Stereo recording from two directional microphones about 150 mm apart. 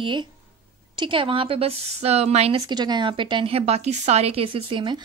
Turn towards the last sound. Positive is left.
turn(degrees=-35)  # may be behind; listen again after turning